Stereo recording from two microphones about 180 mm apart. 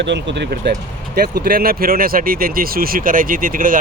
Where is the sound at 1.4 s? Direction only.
55° right (ahead or behind).